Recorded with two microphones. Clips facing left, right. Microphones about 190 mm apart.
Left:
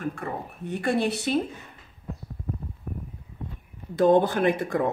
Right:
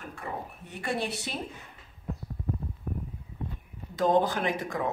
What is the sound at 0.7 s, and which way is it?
Speech, 55° left (ahead or behind).